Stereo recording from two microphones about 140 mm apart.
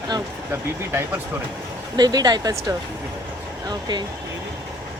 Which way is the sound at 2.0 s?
30° right (ahead or behind).